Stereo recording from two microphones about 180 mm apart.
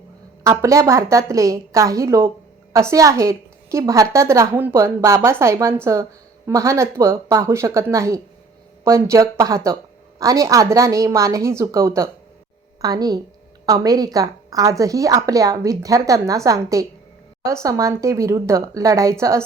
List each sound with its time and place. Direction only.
0.6 s a woman's voice: 15° right (ahead or behind)